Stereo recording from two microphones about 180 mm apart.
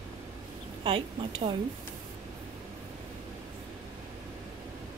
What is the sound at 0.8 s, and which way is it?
Speech, 30° right (ahead or behind).